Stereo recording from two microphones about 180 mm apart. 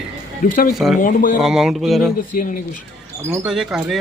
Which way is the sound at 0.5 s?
55° left (ahead or behind).